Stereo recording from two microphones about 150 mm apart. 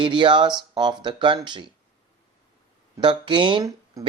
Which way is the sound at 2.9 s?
30° right (ahead or behind).